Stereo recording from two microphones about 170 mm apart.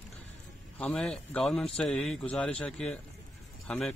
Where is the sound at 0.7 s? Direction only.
5° left (ahead or behind).